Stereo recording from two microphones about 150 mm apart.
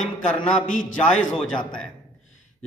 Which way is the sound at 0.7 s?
60° left (ahead or behind).